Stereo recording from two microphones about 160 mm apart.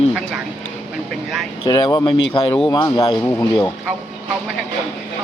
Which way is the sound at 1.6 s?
30° left (ahead or behind).